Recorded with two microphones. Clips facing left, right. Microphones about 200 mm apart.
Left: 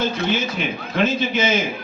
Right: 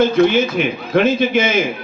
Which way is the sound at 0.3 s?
55° right (ahead or behind).